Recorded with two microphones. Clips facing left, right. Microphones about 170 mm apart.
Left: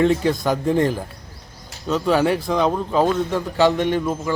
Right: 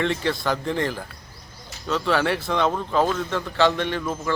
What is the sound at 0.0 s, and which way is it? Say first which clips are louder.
Speech: left 6 dB; 10° left (ahead or behind).